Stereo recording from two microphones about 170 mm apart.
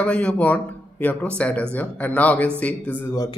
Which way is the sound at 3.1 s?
20° left (ahead or behind).